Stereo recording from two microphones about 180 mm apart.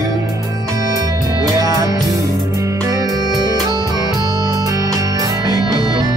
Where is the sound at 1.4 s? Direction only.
20° right (ahead or behind).